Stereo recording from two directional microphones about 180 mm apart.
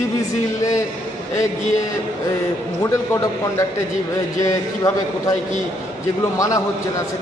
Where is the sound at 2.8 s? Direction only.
20° left (ahead or behind).